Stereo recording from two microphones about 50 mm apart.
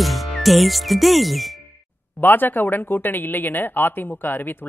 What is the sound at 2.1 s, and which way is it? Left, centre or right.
Speech, left.